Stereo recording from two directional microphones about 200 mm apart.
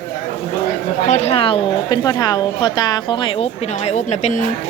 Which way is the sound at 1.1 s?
30° left (ahead or behind).